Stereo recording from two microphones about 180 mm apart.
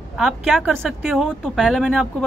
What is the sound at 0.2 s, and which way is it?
Speech, centre (ahead or behind).